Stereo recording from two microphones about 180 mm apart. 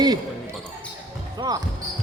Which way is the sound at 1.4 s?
20° right (ahead or behind).